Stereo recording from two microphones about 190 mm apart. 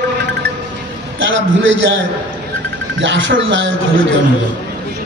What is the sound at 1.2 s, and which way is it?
Speech, 75° right (ahead or behind).